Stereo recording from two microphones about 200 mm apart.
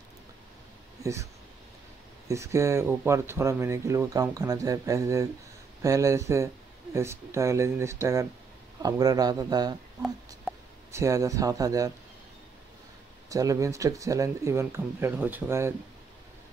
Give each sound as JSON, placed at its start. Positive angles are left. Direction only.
{"t": 1.0, "sound": "speech", "side_deg": -15}
{"t": 10.9, "sound": "speech", "side_deg": -15}
{"t": 13.3, "sound": "speech", "side_deg": -15}